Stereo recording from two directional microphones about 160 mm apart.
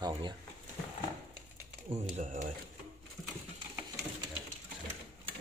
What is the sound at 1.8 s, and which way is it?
Speech, 45° right (ahead or behind).